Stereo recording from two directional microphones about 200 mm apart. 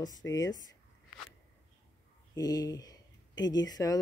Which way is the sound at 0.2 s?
10° left (ahead or behind).